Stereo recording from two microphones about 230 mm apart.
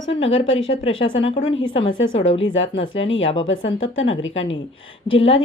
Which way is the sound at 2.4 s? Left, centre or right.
Left.